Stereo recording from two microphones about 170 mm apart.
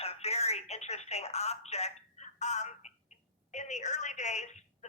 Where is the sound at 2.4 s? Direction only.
45° left (ahead or behind).